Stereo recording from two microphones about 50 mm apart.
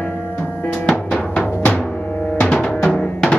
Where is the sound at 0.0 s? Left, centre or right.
Left.